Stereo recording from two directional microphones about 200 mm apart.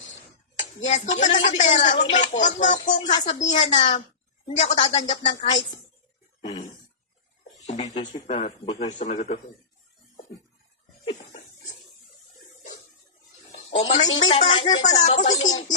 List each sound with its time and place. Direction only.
0.6 s speech: 35° left (ahead or behind)
2.0 s speech: 25° left (ahead or behind)
2.3 s speech: 35° left (ahead or behind)
7.7 s speech: 30° left (ahead or behind)
11.0 s dog: 30° left (ahead or behind)
14.2 s speech: 30° left (ahead or behind)